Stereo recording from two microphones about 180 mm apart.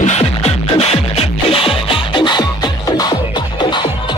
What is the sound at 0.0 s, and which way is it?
Music, 40° left (ahead or behind).